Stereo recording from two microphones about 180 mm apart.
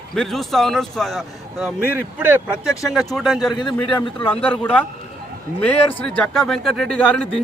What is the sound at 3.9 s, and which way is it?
Speech, 25° left (ahead or behind).